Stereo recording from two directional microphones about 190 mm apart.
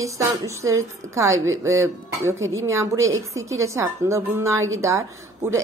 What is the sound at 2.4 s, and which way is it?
Speech, 90° right.